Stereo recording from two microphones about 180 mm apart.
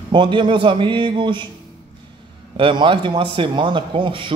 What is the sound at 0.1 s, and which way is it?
Speech, 25° right (ahead or behind).